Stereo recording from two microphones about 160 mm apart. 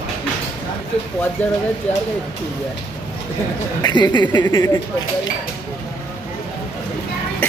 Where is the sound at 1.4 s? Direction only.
10° left (ahead or behind).